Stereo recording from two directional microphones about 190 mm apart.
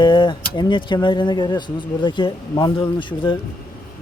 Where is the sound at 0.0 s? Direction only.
25° left (ahead or behind).